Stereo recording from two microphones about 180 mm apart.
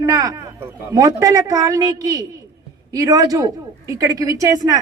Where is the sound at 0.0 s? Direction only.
20° right (ahead or behind).